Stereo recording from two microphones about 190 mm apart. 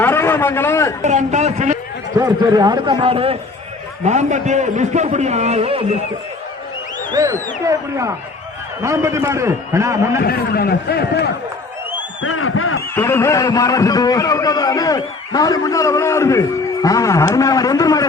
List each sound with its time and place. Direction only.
0.0 s a man's voice: 10° left (ahead or behind)
1.0 s a sound: 40° right (ahead or behind)
2.1 s a man's voice: 20° right (ahead or behind)
7.1 s a man's voice: 15° right (ahead or behind)
10.2 s a man's voice: 55° left (ahead or behind)
12.2 s speech: 90° left
13.0 s a man's voice: 15° left (ahead or behind)